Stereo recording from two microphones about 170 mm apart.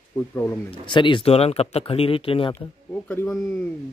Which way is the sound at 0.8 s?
30° left (ahead or behind).